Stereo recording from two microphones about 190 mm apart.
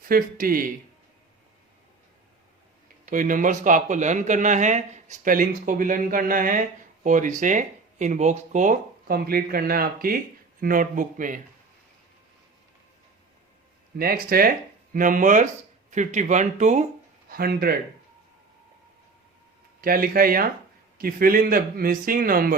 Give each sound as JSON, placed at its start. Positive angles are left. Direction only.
{"t": 0.1, "sound": "speech", "side_deg": -50}
{"t": 3.1, "sound": "speech", "side_deg": -45}
{"t": 13.9, "sound": "speech", "side_deg": -50}
{"t": 17.2, "sound": "speech", "side_deg": -50}
{"t": 19.8, "sound": "speech", "side_deg": -50}